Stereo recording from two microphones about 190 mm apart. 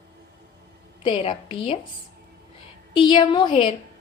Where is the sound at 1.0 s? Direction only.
25° left (ahead or behind).